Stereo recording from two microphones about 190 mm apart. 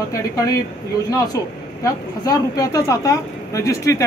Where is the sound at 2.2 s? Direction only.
20° left (ahead or behind).